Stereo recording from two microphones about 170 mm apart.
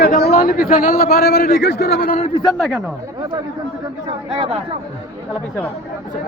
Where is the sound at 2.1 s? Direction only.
40° left (ahead or behind).